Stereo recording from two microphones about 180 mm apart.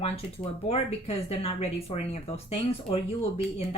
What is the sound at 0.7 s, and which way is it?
Speech, 35° left (ahead or behind).